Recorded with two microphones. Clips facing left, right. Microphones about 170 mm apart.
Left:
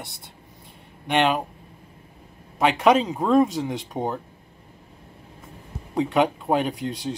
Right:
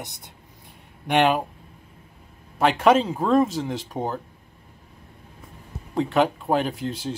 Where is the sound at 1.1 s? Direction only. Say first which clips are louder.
Right 2 dB; 5° right (ahead or behind).